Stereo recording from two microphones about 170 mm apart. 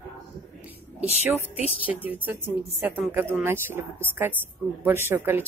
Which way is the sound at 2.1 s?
10° right (ahead or behind).